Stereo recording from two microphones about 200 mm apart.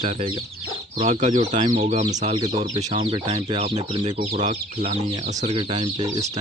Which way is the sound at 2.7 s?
30° right (ahead or behind).